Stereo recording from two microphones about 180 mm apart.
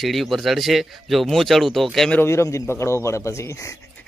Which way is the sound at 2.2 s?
15° left (ahead or behind).